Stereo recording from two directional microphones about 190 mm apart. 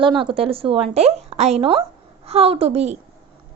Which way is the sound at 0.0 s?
25° right (ahead or behind).